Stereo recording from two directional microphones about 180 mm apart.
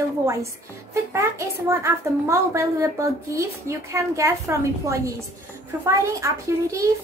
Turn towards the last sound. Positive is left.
turn(degrees=-15)  # may be behind; listen again after turning